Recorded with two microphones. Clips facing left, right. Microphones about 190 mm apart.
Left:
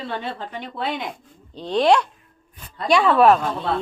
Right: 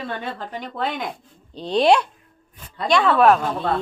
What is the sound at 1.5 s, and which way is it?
Speech, 10° right (ahead or behind).